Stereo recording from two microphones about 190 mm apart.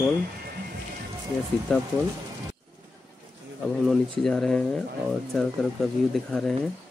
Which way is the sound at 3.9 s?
Centre (ahead or behind).